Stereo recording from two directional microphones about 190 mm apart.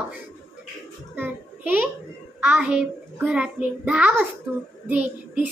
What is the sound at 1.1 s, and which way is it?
Child singing, 10° right (ahead or behind).